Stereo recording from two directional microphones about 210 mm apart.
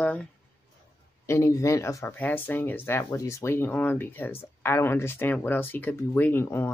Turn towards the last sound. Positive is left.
turn(degrees=10)  # may be behind; listen again after turning